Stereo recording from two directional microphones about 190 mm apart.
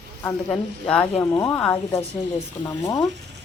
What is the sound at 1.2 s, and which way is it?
Speech, 15° left (ahead or behind).